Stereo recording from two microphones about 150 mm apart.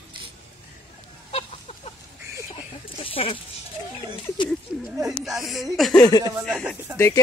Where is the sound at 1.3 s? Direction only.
45° left (ahead or behind).